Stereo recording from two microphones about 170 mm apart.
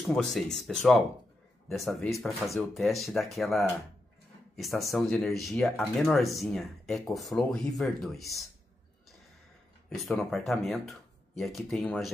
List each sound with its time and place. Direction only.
0.1 s speech: 5° left (ahead or behind)
9.8 s speech: centre (ahead or behind)